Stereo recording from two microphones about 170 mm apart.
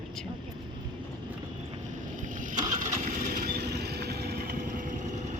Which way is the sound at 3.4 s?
70° right (ahead or behind).